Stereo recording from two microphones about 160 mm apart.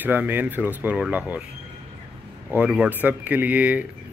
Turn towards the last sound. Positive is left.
turn(degrees=-10)  # may be behind; listen again after turning